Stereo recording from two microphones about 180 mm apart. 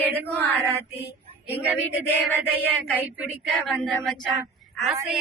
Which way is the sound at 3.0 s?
5° right (ahead or behind).